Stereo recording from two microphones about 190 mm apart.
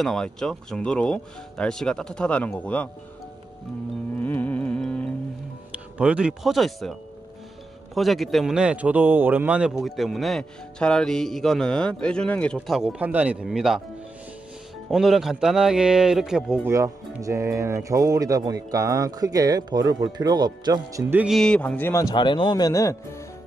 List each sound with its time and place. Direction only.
0.0 s speech: 5° left (ahead or behind)
4.2 s music: 10° left (ahead or behind)
5.9 s speech: 5° right (ahead or behind)
14.9 s speech: centre (ahead or behind)
16.6 s speech: 15° right (ahead or behind); by 23.2 s 15° left (ahead or behind)